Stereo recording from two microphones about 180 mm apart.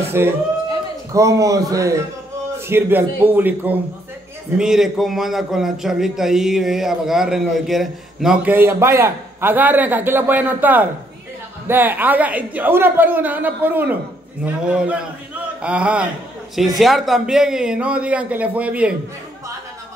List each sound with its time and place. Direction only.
0.2 s a man's voice: 15° right (ahead or behind)